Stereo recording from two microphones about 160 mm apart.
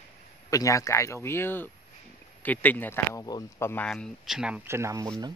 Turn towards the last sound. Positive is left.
turn(degrees=-20)  # may be behind; listen again after turning